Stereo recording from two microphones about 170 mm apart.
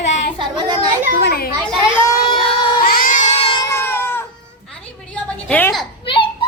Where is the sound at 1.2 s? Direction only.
65° left (ahead or behind).